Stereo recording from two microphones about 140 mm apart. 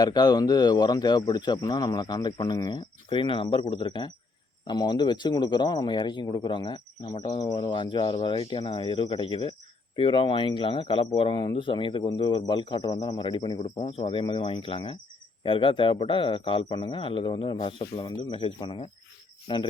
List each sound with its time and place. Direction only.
0.0 s speech: 30° left (ahead or behind)